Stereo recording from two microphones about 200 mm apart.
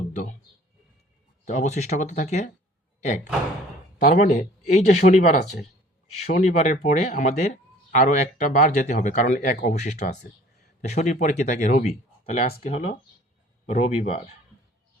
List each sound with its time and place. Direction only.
0.1 s a sound: 40° left (ahead or behind)
1.5 s speech: 35° left (ahead or behind)
4.0 s speech: 40° left (ahead or behind)